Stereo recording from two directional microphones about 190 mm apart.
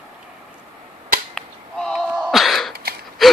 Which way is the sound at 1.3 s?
Centre (ahead or behind).